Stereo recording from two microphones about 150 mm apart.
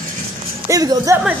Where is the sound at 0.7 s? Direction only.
25° right (ahead or behind).